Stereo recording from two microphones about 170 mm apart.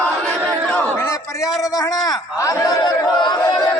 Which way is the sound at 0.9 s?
15° left (ahead or behind).